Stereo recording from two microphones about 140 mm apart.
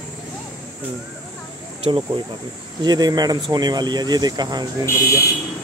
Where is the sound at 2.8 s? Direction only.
30° right (ahead or behind).